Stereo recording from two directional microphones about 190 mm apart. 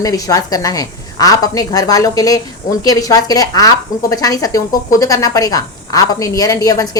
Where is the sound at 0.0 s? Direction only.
20° left (ahead or behind).